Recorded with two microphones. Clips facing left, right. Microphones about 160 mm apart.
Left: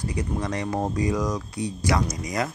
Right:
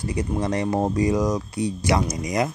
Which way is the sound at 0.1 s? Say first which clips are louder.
Right 6 dB; 30° right (ahead or behind).